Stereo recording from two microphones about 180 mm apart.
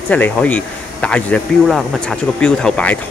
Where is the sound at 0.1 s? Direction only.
10° left (ahead or behind).